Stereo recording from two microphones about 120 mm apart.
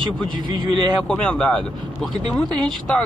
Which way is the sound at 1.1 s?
5° left (ahead or behind).